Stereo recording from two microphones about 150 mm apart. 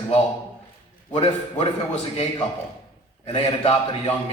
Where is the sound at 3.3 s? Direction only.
40° left (ahead or behind).